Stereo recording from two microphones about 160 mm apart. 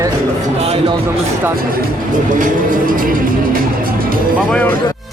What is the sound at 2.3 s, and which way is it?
Music, 55° right (ahead or behind).